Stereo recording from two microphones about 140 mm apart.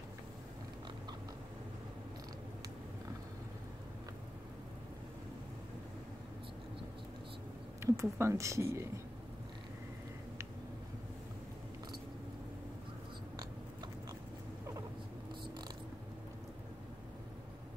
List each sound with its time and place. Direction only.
7.8 s speech: 20° right (ahead or behind)